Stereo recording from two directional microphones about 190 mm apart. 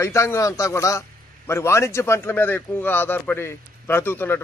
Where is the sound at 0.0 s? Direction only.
15° left (ahead or behind).